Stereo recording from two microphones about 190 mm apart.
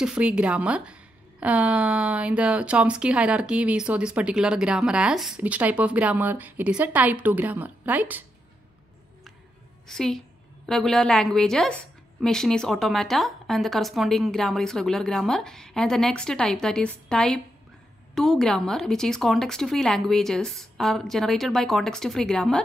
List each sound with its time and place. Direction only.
0.0 s a woman's voice: 5° right (ahead or behind)
9.8 s a woman's voice: centre (ahead or behind)